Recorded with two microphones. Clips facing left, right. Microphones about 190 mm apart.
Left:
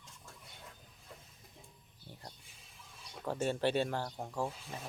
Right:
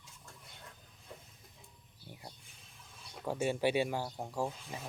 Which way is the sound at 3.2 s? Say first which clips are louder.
Right 1 dB; 10° right (ahead or behind).